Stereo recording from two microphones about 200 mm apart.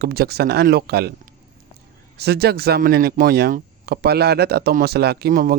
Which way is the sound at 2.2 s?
55° right (ahead or behind).